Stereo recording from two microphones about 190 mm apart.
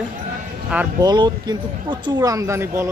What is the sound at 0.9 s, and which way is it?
Speech, 20° right (ahead or behind).